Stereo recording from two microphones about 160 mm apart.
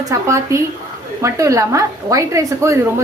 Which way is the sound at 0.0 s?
20° right (ahead or behind).